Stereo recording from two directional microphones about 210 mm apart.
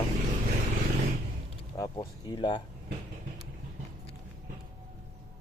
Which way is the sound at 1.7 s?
15° left (ahead or behind).